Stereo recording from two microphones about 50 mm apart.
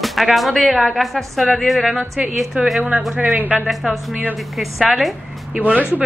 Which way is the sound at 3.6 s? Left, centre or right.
Centre.